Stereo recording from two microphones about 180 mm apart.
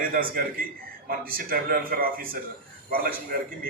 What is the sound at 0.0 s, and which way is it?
A man's voice, 50° right (ahead or behind).